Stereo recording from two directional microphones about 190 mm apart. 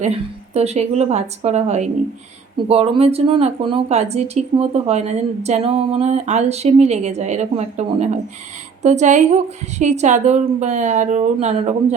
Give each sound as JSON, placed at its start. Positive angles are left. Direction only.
{"t": 0.0, "sound": "speech", "side_deg": -35}